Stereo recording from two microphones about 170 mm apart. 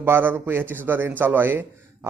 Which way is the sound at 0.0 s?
10° right (ahead or behind).